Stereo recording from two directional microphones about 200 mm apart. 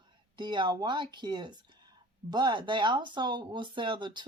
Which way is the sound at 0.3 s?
20° right (ahead or behind).